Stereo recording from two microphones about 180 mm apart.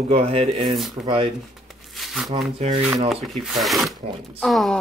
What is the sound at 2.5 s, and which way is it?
Speech, 30° right (ahead or behind).